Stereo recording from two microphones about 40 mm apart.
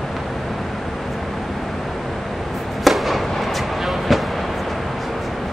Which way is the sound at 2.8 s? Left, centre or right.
Centre.